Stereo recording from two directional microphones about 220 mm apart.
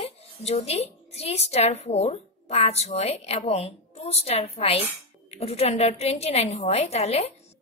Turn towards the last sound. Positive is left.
turn(degrees=30)  # may be behind; listen again after turning